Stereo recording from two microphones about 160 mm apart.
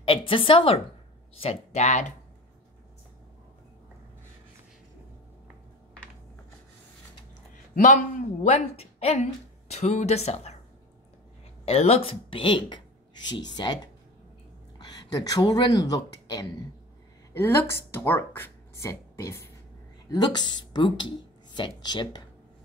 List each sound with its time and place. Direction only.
0.3 s speech: 35° left (ahead or behind)
7.7 s speech: 50° left (ahead or behind)
11.6 s speech: 40° left (ahead or behind)
14.8 s speech: 25° left (ahead or behind)
20.1 s speech: 25° left (ahead or behind)